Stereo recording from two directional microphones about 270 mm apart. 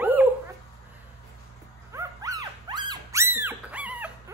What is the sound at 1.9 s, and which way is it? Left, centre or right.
Dog, centre.